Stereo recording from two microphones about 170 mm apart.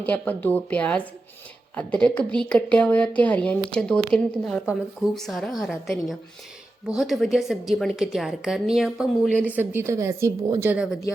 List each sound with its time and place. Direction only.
0.0 s a woman's voice: 10° left (ahead or behind)
9.6 s a woman's voice: 15° right (ahead or behind)